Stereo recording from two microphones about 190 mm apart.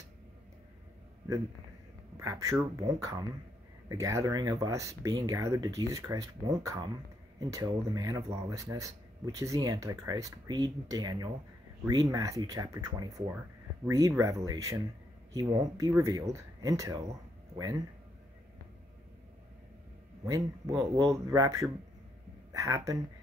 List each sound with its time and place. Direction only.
2.1 s speech: 20° right (ahead or behind)
20.2 s speech: 20° right (ahead or behind)